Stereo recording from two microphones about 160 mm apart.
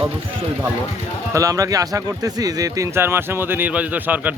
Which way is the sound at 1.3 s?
20° right (ahead or behind).